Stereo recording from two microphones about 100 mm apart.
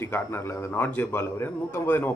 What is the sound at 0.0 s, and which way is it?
Speech, 25° left (ahead or behind).